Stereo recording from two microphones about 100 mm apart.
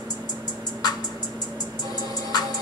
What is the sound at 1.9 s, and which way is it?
Music, 40° left (ahead or behind).